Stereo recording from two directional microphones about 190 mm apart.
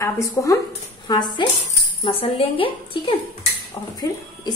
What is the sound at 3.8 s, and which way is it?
Speech, 15° left (ahead or behind).